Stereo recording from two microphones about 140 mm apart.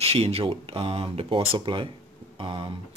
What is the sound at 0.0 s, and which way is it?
Speech, 45° right (ahead or behind).